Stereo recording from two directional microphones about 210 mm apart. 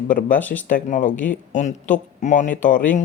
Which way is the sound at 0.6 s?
40° left (ahead or behind).